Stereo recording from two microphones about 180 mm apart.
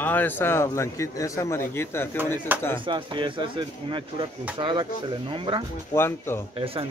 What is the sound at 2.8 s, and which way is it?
Speech, 25° right (ahead or behind).